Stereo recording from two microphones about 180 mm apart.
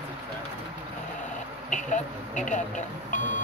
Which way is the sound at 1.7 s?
45° left (ahead or behind).